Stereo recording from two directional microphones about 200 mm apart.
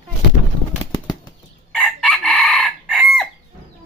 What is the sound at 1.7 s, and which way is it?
Chicken, centre (ahead or behind).